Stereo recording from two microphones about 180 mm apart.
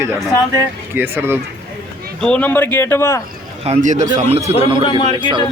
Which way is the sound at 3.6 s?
40° right (ahead or behind).